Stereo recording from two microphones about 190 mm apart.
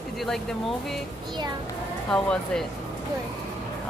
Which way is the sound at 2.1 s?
5° left (ahead or behind).